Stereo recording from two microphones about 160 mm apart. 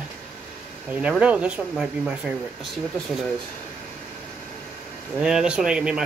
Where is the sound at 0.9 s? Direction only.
10° right (ahead or behind).